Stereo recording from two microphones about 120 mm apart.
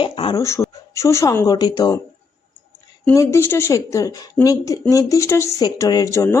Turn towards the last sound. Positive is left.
turn(degrees=25)  # may be behind; listen again after turning